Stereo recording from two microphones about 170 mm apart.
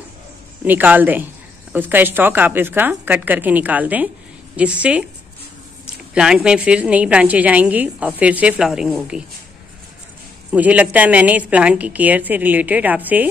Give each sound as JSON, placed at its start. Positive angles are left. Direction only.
{"t": 0.7, "sound": "a woman's voice", "side_deg": -10}
{"t": 10.5, "sound": "a woman's voice", "side_deg": -10}